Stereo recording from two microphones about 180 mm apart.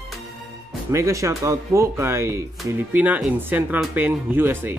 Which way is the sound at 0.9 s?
15° right (ahead or behind).